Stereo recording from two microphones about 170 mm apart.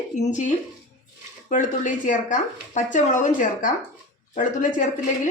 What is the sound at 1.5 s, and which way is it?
Speech, 45° left (ahead or behind).